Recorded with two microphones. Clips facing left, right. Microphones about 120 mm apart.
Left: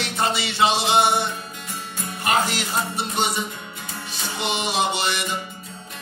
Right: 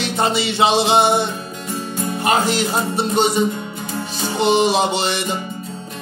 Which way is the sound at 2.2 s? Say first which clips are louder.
Right 4 dB; 30° right (ahead or behind).